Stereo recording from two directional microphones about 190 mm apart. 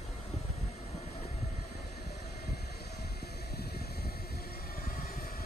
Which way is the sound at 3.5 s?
55° left (ahead or behind).